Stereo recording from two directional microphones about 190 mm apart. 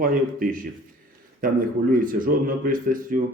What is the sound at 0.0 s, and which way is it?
Speech, 45° right (ahead or behind).